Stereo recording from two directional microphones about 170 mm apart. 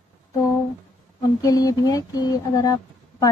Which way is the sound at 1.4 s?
20° left (ahead or behind).